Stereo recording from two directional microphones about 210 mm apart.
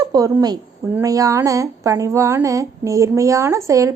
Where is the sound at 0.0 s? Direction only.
15° right (ahead or behind).